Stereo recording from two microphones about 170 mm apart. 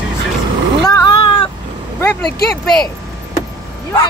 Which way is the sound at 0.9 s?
25° left (ahead or behind).